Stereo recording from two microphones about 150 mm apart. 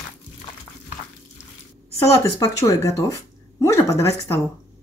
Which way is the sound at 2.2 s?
20° left (ahead or behind).